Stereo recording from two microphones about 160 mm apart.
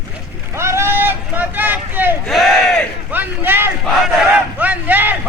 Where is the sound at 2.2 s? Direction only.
Centre (ahead or behind).